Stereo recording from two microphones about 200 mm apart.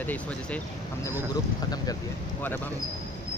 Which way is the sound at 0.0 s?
10° left (ahead or behind).